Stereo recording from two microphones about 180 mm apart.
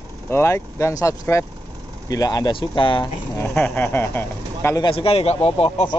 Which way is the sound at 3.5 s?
10° left (ahead or behind).